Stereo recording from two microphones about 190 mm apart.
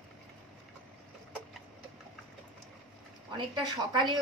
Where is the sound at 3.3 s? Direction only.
25° right (ahead or behind).